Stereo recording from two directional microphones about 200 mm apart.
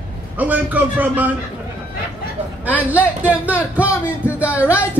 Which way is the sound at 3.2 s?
10° right (ahead or behind).